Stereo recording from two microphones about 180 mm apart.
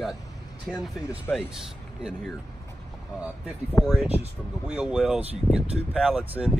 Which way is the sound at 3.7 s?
Centre (ahead or behind).